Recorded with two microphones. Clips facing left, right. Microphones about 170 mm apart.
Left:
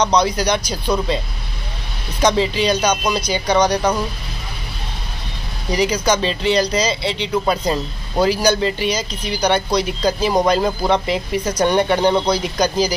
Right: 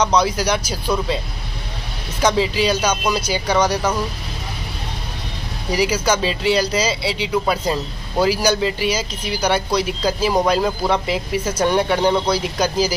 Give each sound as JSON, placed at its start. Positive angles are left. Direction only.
{"t": 0.0, "sound": "speech", "side_deg": -5}
{"t": 2.2, "sound": "speech", "side_deg": -5}
{"t": 5.7, "sound": "speech", "side_deg": -5}